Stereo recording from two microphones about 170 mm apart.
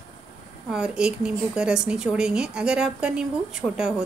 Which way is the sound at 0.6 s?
5° right (ahead or behind).